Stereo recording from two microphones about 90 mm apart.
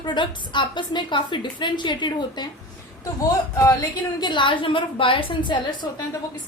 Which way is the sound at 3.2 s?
40° left (ahead or behind).